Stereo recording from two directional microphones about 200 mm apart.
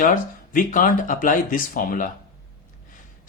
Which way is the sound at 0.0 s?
40° left (ahead or behind).